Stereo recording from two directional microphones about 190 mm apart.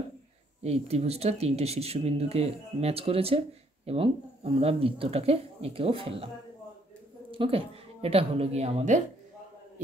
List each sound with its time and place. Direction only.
0.7 s speech: 35° right (ahead or behind)